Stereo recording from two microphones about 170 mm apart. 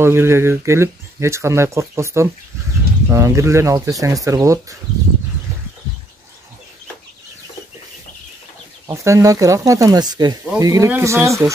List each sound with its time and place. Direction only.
0.0 s speech: 15° right (ahead or behind)
8.8 s speech: 20° right (ahead or behind)